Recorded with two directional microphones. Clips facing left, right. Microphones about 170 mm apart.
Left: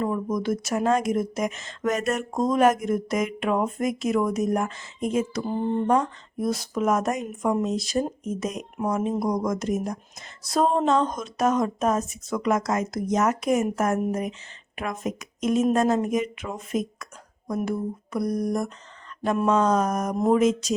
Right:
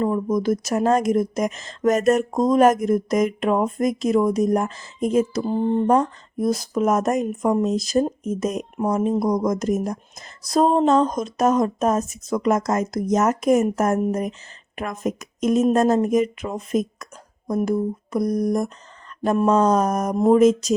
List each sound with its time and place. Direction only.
0.0 s speech: 35° right (ahead or behind)